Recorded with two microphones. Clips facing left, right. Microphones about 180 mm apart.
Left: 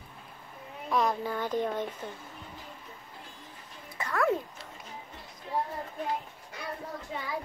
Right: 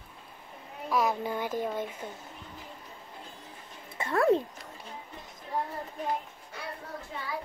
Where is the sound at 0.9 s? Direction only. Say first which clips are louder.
Even; 5° right (ahead or behind).